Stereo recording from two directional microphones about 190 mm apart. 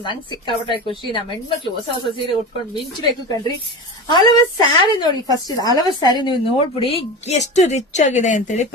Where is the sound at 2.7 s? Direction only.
25° left (ahead or behind).